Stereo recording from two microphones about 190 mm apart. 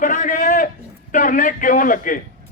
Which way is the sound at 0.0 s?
45° left (ahead or behind).